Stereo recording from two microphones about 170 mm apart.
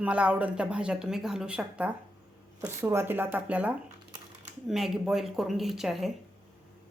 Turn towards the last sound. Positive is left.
turn(degrees=0)  # may be behind; listen again after turning